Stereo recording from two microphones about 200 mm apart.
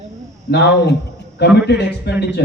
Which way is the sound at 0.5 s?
60° left (ahead or behind).